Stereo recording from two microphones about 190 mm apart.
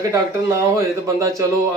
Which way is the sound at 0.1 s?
15° right (ahead or behind).